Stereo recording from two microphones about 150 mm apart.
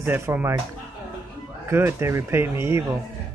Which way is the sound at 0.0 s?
15° right (ahead or behind).